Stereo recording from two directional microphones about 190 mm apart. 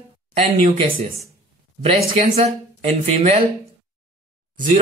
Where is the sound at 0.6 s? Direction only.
30° right (ahead or behind).